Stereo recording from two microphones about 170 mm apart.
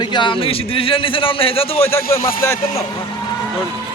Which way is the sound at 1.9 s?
15° left (ahead or behind).